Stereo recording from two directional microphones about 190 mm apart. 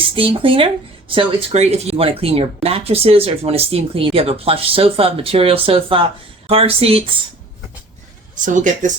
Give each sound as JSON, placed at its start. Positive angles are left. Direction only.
{"t": 0.2, "sound": "speech", "side_deg": -25}
{"t": 8.4, "sound": "speech", "side_deg": -40}